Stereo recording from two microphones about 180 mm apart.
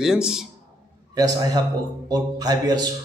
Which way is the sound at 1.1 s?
20° right (ahead or behind).